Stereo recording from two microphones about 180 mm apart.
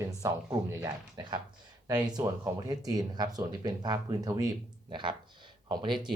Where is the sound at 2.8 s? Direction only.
20° right (ahead or behind).